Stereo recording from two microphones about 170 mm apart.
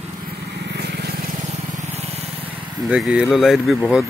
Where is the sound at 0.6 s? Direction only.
75° right (ahead or behind).